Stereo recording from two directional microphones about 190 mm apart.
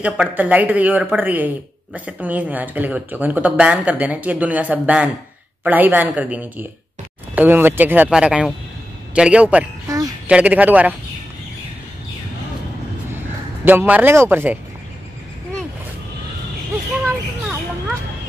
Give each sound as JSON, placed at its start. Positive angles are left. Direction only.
{"t": 0.0, "sound": "speech", "side_deg": -10}
{"t": 9.8, "sound": "bird", "side_deg": -20}
{"t": 10.2, "sound": "speech", "side_deg": -5}
{"t": 13.7, "sound": "speech", "side_deg": -10}